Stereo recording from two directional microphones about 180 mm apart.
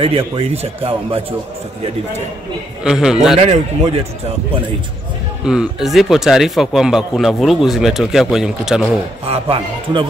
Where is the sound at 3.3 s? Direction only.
35° right (ahead or behind).